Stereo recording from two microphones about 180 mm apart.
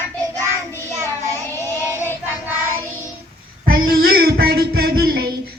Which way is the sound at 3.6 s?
55° right (ahead or behind).